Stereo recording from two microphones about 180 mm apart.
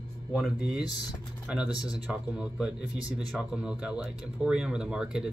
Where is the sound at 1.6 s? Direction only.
20° left (ahead or behind).